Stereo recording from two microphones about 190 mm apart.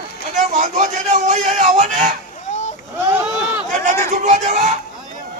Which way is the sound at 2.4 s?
35° left (ahead or behind).